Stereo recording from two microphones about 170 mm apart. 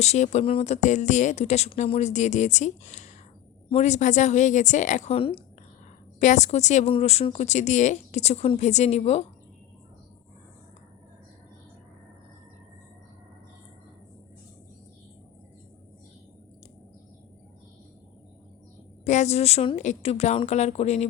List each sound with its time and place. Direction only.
0.0 s speech: 40° left (ahead or behind)
6.1 s speech: 45° left (ahead or behind)
19.0 s speech: 45° left (ahead or behind)